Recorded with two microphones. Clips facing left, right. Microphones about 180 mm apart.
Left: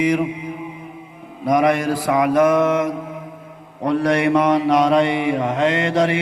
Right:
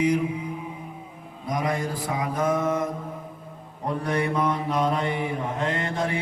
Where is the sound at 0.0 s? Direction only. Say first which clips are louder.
Left 4 dB; 75° left (ahead or behind).